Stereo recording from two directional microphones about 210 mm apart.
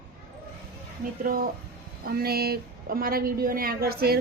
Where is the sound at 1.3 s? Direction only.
40° right (ahead or behind).